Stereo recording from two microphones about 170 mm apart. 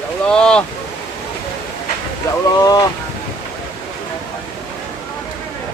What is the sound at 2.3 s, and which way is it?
Speech, 20° left (ahead or behind).